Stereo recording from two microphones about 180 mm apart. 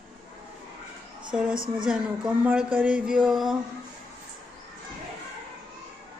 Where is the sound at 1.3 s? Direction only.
5° right (ahead or behind).